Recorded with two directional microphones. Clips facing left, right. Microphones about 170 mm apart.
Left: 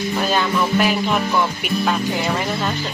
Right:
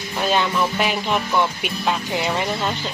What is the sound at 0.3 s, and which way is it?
Music, 20° right (ahead or behind).